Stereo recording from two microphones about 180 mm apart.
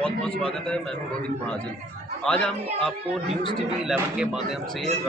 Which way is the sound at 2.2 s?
5° left (ahead or behind).